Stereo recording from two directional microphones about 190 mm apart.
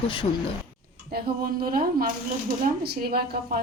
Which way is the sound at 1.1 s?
50° right (ahead or behind).